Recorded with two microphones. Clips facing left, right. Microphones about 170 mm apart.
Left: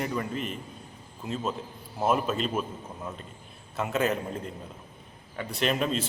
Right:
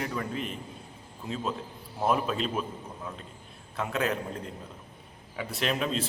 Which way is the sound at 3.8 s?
5° left (ahead or behind).